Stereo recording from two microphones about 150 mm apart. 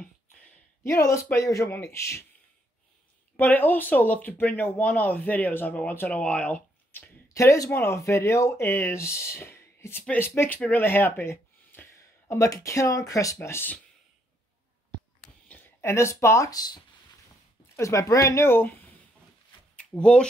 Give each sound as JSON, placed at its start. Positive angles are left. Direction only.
{"t": 1.0, "sound": "speech", "side_deg": 20}
{"t": 3.3, "sound": "speech", "side_deg": 10}
{"t": 15.4, "sound": "speech", "side_deg": 15}
{"t": 19.7, "sound": "a sound", "side_deg": 5}